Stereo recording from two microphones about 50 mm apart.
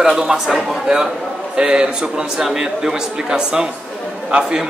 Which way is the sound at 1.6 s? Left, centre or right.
Centre.